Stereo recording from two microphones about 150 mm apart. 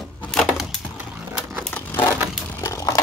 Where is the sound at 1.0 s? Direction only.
10° right (ahead or behind).